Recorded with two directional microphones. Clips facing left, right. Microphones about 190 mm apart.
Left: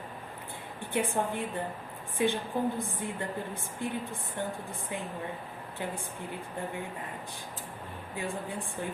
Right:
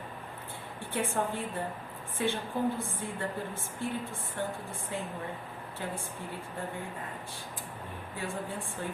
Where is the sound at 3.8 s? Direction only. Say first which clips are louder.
Even; 15° left (ahead or behind).